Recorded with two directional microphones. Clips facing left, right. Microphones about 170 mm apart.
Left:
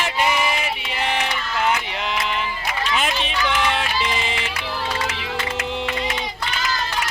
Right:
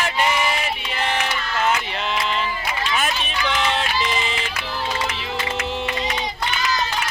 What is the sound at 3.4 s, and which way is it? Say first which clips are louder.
Run: even; 20° right (ahead or behind).